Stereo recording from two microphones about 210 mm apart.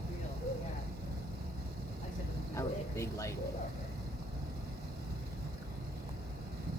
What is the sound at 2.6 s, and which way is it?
Vehicle, 15° left (ahead or behind).